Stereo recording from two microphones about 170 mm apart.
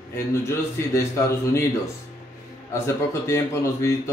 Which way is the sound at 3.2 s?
15° left (ahead or behind).